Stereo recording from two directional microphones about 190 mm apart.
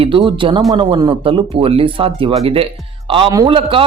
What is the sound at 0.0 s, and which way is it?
A man's voice, 25° right (ahead or behind).